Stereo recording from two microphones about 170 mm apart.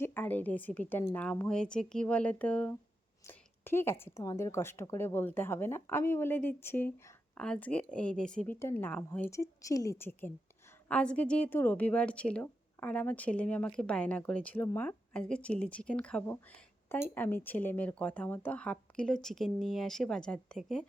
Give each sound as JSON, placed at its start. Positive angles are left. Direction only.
{"t": 0.0, "sound": "a woman's voice", "side_deg": 10}